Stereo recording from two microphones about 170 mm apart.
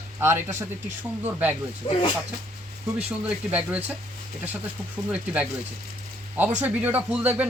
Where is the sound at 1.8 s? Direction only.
35° left (ahead or behind).